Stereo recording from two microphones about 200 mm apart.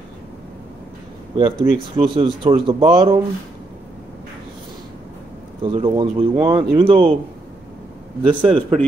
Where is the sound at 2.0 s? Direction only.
25° right (ahead or behind).